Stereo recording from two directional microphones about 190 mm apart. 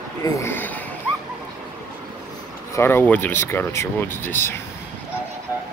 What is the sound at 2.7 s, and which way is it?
Speech, 10° left (ahead or behind).